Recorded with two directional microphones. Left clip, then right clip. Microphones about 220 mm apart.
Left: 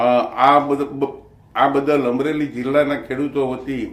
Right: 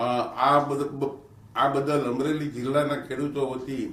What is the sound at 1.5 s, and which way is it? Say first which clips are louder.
Speech: left 7 dB; 50° right (ahead or behind).